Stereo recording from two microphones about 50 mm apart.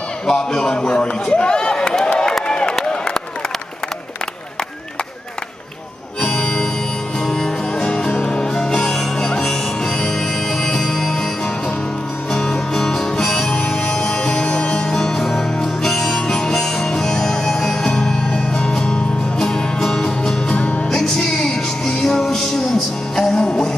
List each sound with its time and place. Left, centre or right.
0.3 s a man's voice: centre
2.4 s a sound: centre
6.2 s music: centre
7.9 s music: centre
12.3 s music: centre
20.5 s music: left
20.9 s music: centre